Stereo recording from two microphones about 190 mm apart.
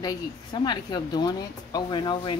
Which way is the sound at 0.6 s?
25° left (ahead or behind).